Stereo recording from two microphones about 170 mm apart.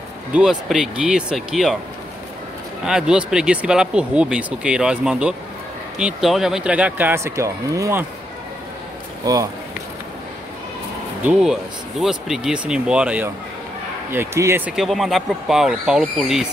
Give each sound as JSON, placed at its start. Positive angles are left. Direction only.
{"t": 0.3, "sound": "speech", "side_deg": -5}
{"t": 2.8, "sound": "speech", "side_deg": -5}
{"t": 9.2, "sound": "speech", "side_deg": -20}
{"t": 12.0, "sound": "speech", "side_deg": -5}
{"t": 14.8, "sound": "speech", "side_deg": 0}